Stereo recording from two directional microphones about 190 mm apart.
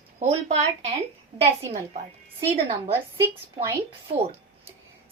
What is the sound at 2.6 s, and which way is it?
Speech, 30° right (ahead or behind).